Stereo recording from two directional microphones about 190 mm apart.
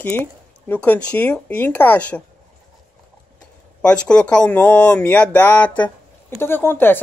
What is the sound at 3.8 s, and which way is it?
Speech, 5° left (ahead or behind).